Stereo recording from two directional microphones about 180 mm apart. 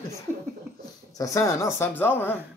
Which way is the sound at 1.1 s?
20° left (ahead or behind).